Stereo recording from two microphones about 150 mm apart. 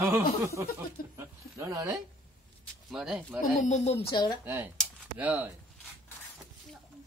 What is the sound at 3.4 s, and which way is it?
Speech, 55° left (ahead or behind).